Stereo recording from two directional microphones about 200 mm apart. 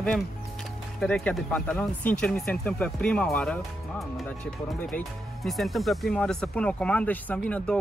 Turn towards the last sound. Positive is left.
turn(degrees=5)  # may be behind; listen again after turning